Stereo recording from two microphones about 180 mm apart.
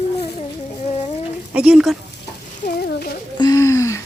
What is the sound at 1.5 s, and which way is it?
Speech, 5° right (ahead or behind).